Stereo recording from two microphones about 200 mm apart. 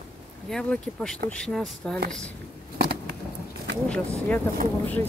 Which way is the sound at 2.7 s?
50° right (ahead or behind).